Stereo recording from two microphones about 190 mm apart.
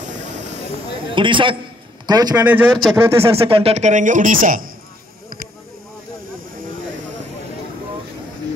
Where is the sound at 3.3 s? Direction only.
30° right (ahead or behind); by 4.6 s 45° right (ahead or behind).